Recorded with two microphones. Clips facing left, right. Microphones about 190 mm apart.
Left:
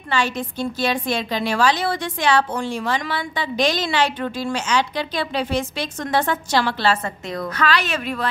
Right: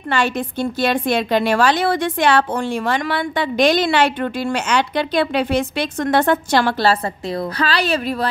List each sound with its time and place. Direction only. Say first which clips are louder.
0.1 s a woman's voice: right 3 dB; 55° right (ahead or behind)
6.8 s a woman's voice: right 3 dB; 35° right (ahead or behind)